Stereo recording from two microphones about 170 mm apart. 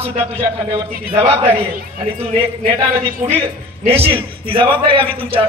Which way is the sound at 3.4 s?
35° right (ahead or behind).